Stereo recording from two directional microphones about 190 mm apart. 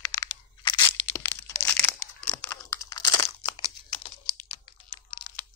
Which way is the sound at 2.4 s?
15° left (ahead or behind).